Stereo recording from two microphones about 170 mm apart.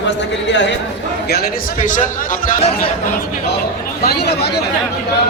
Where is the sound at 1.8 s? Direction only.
50° left (ahead or behind).